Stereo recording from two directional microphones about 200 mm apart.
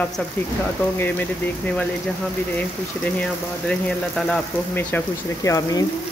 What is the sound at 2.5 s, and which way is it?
Speech, 5° left (ahead or behind).